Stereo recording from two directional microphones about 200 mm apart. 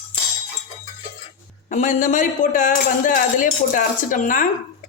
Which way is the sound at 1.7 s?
40° left (ahead or behind).